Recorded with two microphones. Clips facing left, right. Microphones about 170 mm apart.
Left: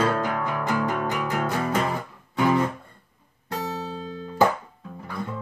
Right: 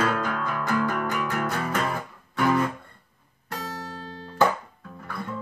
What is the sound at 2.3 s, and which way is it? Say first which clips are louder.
Guitar: left 1 dB; 15° left (ahead or behind).